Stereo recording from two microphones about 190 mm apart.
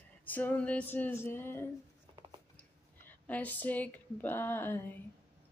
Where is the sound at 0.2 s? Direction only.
10° left (ahead or behind).